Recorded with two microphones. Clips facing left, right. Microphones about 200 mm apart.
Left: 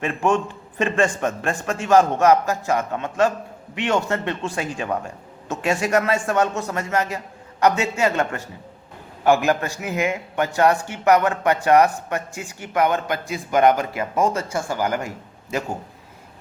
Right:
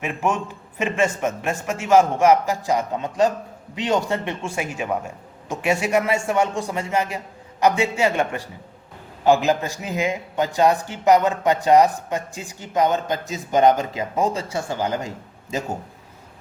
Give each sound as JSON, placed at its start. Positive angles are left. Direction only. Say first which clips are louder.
{"t": 0.0, "sound": "a man's voice", "louder": "left 3 dB", "side_deg": -10}
{"t": 9.5, "sound": "a man's voice", "louder": "even", "side_deg": -15}